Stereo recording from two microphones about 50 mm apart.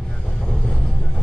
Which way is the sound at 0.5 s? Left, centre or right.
Centre.